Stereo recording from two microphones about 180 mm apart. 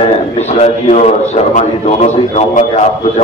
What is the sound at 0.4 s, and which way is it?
A man's voice, 35° left (ahead or behind).